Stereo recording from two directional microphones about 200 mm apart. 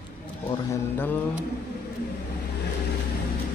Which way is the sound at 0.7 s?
10° left (ahead or behind).